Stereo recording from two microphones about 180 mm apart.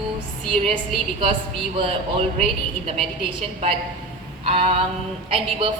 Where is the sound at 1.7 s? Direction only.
30° right (ahead or behind).